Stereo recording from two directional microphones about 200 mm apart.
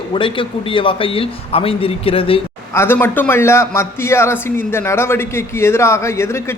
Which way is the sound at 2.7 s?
10° left (ahead or behind).